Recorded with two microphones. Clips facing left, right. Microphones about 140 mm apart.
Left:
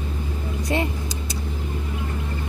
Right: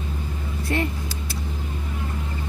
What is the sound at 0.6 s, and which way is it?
Vehicle, 20° left (ahead or behind).